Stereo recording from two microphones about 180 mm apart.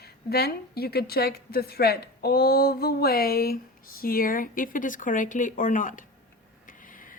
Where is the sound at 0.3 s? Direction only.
60° left (ahead or behind).